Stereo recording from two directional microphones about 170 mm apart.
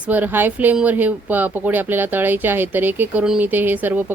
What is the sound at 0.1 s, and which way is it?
Speech, 10° right (ahead or behind).